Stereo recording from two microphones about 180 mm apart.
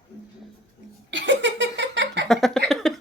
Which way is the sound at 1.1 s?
90° right.